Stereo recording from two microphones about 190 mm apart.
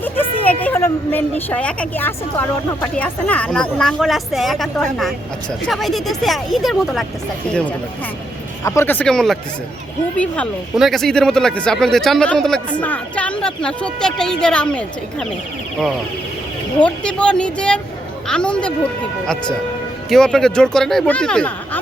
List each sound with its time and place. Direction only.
0.4 s a woman's voice: 10° left (ahead or behind)
8.6 s a woman's voice: 15° left (ahead or behind)
16.8 s speech: 5° left (ahead or behind)
20.1 s speech: 5° left (ahead or behind)